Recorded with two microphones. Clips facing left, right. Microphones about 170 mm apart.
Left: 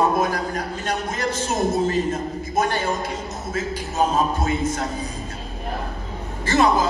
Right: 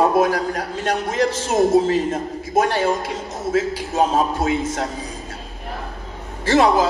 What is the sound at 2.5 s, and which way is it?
A man's voice, 90° right.